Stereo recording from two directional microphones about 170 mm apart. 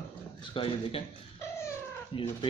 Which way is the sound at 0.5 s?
30° left (ahead or behind).